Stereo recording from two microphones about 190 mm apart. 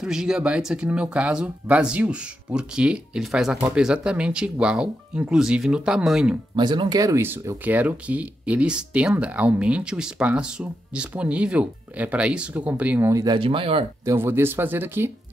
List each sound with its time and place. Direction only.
0.0 s speech: 5° right (ahead or behind)
6.5 s speech: 25° right (ahead or behind)
14.0 s speech: 10° right (ahead or behind)